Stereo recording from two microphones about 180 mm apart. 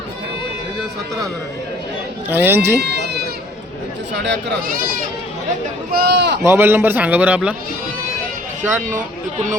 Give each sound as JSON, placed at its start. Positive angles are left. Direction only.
{"t": 2.3, "sound": "a man's voice", "side_deg": -10}
{"t": 2.8, "sound": "goat", "side_deg": -65}
{"t": 4.2, "sound": "speech", "side_deg": -80}
{"t": 5.9, "sound": "speech", "side_deg": -60}
{"t": 6.4, "sound": "a man's voice", "side_deg": -15}
{"t": 9.0, "sound": "speech", "side_deg": -45}